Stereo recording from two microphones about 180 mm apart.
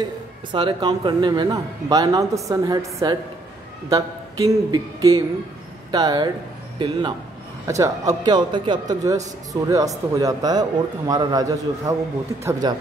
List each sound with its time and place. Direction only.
0.0 s speech: 25° right (ahead or behind)